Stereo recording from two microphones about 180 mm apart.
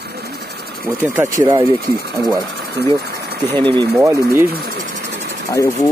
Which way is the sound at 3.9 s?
15° right (ahead or behind).